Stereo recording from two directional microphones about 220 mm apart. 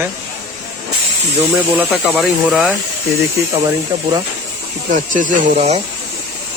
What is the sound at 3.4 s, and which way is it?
Speech, 10° right (ahead or behind).